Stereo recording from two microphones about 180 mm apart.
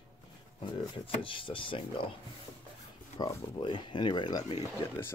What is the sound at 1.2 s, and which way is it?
Speech, 30° left (ahead or behind).